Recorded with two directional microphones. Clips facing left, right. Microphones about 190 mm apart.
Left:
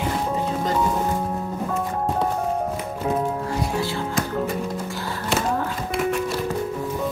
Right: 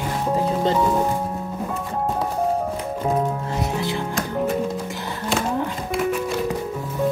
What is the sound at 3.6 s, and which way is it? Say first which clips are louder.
Music: right 2 dB; 20° right (ahead or behind).